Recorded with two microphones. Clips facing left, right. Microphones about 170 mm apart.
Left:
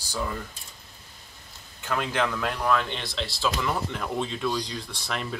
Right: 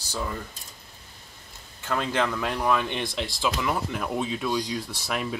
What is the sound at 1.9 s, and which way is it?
Speech, 5° left (ahead or behind).